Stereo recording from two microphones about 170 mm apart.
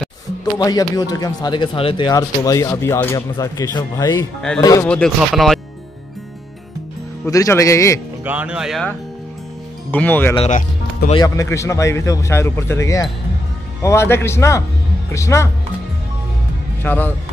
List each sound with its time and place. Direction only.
0.6 s speech: 20° left (ahead or behind)
4.8 s speech: 5° left (ahead or behind)
7.2 s speech: 20° left (ahead or behind)
8.2 s speech: 10° right (ahead or behind)
9.8 s speech: 10° left (ahead or behind)
10.3 s speech: 35° left (ahead or behind)
11.2 s speech: 20° left (ahead or behind)
16.8 s speech: 10° left (ahead or behind)